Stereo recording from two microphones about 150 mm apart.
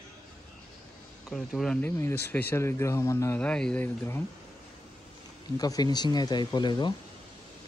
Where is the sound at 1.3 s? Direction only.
5° left (ahead or behind).